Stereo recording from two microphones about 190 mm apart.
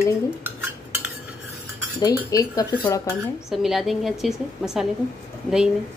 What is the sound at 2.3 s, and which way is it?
Speech, 20° left (ahead or behind).